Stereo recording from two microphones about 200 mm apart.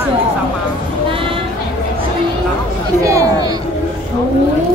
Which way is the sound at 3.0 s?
15° right (ahead or behind).